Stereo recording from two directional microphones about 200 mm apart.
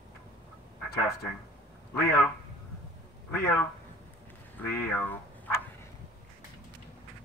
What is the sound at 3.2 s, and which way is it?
A man's voice, 10° left (ahead or behind).